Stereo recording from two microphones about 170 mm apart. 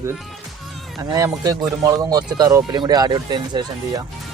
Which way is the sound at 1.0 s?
20° right (ahead or behind).